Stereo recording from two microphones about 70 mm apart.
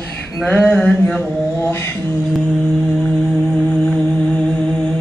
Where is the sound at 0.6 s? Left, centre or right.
Centre.